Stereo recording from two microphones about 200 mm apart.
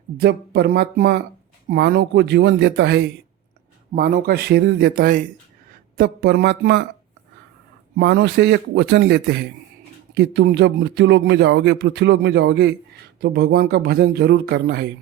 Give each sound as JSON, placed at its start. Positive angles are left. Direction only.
{"t": 0.2, "sound": "speech", "side_deg": -55}
{"t": 7.9, "sound": "speech", "side_deg": -55}